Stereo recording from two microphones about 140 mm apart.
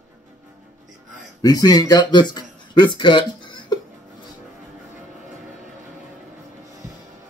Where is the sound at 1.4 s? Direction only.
25° left (ahead or behind).